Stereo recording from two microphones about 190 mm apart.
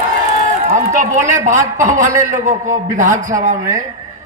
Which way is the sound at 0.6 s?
40° right (ahead or behind).